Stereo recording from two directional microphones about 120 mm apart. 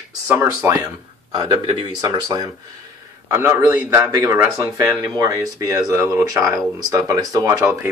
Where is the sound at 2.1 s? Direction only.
30° right (ahead or behind).